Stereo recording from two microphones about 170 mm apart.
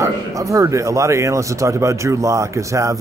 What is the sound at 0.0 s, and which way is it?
A man's voice, 20° right (ahead or behind).